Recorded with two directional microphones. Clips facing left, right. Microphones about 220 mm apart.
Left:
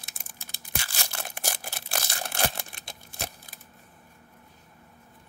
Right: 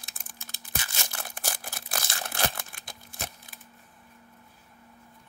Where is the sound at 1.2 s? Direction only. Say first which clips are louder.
Left 3 dB; 25° left (ahead or behind).